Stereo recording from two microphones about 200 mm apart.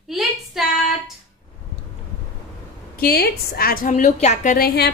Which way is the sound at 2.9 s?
50° left (ahead or behind).